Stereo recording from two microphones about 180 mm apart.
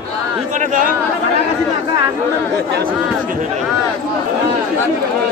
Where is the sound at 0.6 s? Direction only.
45° right (ahead or behind).